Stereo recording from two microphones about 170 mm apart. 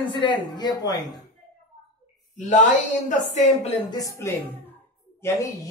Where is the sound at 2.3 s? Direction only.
45° left (ahead or behind).